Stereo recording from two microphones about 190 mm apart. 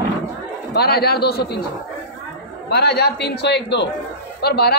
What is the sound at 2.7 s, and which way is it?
A man's voice, 60° left (ahead or behind).